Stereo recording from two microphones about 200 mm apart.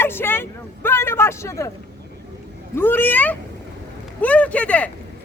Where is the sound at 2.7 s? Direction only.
10° left (ahead or behind).